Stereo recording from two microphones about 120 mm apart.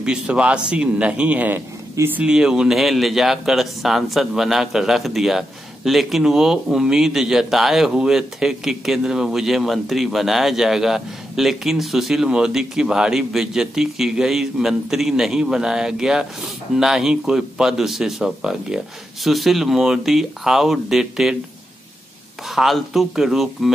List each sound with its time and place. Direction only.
0.0 s a man's voice: 10° right (ahead or behind)
2.2 s a man's voice: 5° right (ahead or behind)
22.5 s a man's voice: centre (ahead or behind)